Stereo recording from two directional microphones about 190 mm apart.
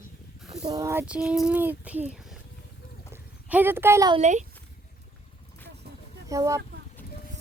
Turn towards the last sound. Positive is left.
turn(degrees=-15)  # may be behind; listen again after turning